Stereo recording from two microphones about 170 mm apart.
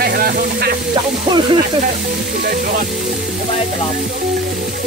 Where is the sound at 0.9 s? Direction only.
25° right (ahead or behind).